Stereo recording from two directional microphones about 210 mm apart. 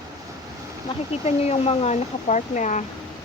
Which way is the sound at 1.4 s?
30° left (ahead or behind).